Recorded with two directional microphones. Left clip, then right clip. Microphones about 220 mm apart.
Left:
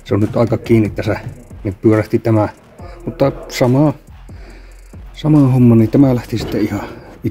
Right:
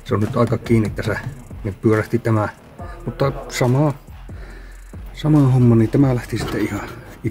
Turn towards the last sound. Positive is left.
turn(degrees=10)  # may be behind; listen again after turning